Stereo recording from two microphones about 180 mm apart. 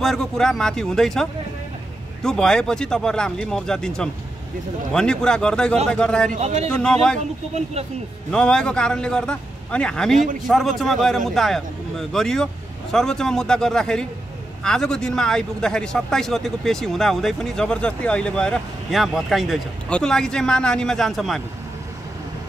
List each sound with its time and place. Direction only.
0.0 s a man's voice: centre (ahead or behind)
6.3 s speech: 35° right (ahead or behind)
6.7 s a man's voice: 5° left (ahead or behind)
7.2 s speech: 40° right (ahead or behind)
8.3 s a man's voice: 5° left (ahead or behind)